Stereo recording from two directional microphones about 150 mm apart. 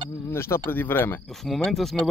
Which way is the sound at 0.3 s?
15° left (ahead or behind).